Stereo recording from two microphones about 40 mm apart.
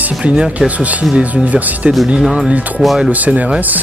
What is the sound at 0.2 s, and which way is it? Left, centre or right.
Speech, right.